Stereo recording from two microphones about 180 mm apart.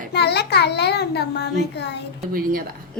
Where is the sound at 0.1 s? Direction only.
65° left (ahead or behind).